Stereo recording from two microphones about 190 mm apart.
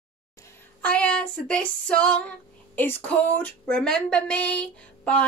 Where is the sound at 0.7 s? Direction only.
5° left (ahead or behind).